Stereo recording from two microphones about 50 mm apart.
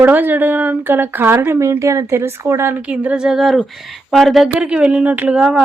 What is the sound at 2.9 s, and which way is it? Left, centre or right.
Speech, right.